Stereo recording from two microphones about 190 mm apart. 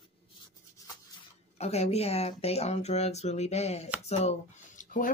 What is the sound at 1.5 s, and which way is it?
Speech, 35° left (ahead or behind).